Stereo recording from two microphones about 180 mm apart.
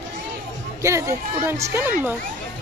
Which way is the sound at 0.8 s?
15° right (ahead or behind).